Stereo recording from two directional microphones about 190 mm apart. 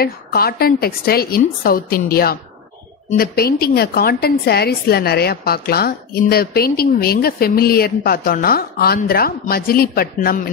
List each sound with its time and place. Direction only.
0.0 s a woman's voice: 55° left (ahead or behind)